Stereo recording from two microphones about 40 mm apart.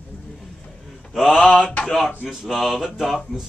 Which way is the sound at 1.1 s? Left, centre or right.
Centre.